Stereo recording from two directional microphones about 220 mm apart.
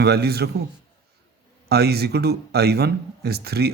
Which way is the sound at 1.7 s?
45° right (ahead or behind).